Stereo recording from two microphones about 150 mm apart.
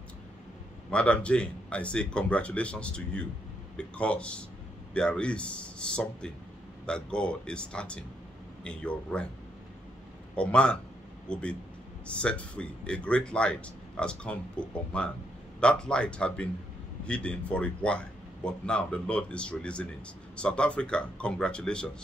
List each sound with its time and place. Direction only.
0.8 s speech: 10° left (ahead or behind)
10.3 s speech: 5° left (ahead or behind)